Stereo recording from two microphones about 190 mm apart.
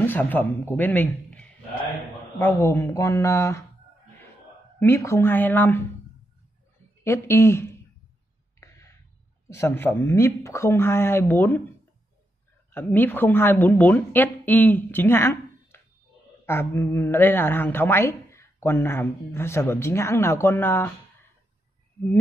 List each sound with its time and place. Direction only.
0.0 s a man's voice: 10° left (ahead or behind)
4.7 s a woman's voice: 10° left (ahead or behind)
7.0 s a woman's voice: 15° left (ahead or behind)
8.5 s a sound: 15° left (ahead or behind)
9.5 s a woman's voice: 15° left (ahead or behind)
12.7 s a woman's voice: 10° left (ahead or behind)